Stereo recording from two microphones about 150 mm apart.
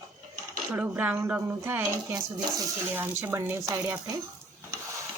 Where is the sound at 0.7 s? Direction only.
10° right (ahead or behind).